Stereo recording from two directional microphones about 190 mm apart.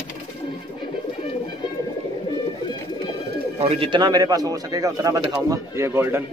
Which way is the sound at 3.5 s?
30° right (ahead or behind).